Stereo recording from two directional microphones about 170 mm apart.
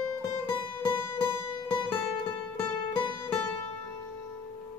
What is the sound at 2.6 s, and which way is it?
Music, 30° left (ahead or behind).